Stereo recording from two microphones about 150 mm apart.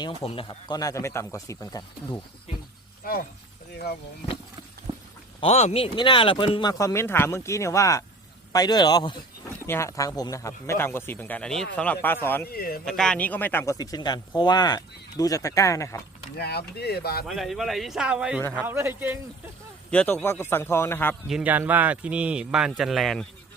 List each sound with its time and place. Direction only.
0.3 s speech: 35° left (ahead or behind)
3.0 s speech: 75° left (ahead or behind)
4.9 s a sound: 40° right (ahead or behind)
5.4 s speech: 45° left (ahead or behind)
9.6 s a man's voice: 20° left (ahead or behind)
12.5 s speech: 90° left
12.8 s a man's voice: 5° left (ahead or behind)
13.7 s speech: 25° left (ahead or behind)
16.4 s speech: 90° left
17.2 s a man's voice: centre (ahead or behind)
19.9 s a man's voice: 10° left (ahead or behind)
21.2 s a man's voice: 5° right (ahead or behind)